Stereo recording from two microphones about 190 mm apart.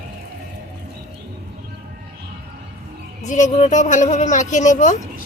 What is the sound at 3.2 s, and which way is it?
Speech, 40° left (ahead or behind).